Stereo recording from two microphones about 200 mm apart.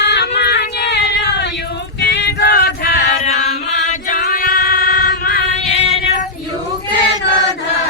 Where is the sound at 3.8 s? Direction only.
40° left (ahead or behind).